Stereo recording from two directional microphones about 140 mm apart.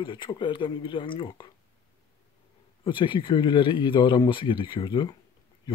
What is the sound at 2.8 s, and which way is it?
Speech, 35° left (ahead or behind).